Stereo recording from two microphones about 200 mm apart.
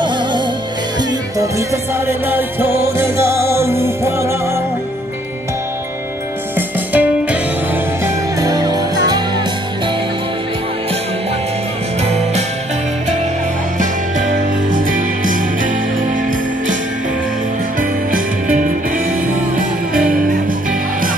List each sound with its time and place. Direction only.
1.4 s music: 15° right (ahead or behind)
6.5 s music: 10° right (ahead or behind)
14.3 s music: 40° right (ahead or behind)